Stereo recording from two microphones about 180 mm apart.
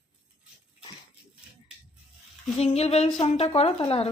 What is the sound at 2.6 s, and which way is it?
Speech, 35° left (ahead or behind).